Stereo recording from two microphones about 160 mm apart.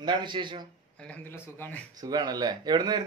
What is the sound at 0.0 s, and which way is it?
Speech, 30° right (ahead or behind).